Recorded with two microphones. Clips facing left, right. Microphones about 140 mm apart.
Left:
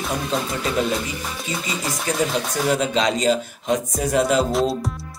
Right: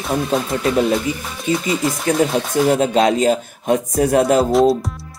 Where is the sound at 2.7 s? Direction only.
50° right (ahead or behind).